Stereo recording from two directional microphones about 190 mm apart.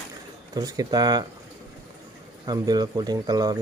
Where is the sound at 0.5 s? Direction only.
20° right (ahead or behind).